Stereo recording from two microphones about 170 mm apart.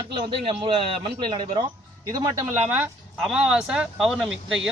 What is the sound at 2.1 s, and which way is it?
Speech, 15° right (ahead or behind).